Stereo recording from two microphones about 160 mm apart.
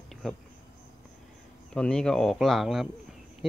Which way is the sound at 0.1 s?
5° left (ahead or behind).